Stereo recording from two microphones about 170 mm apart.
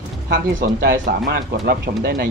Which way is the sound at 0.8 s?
60° right (ahead or behind).